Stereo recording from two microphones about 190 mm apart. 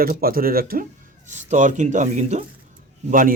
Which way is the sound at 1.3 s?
40° right (ahead or behind).